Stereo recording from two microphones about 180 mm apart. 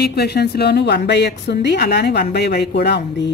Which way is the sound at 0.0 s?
65° left (ahead or behind).